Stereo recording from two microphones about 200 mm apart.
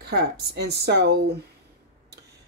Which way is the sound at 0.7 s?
55° right (ahead or behind).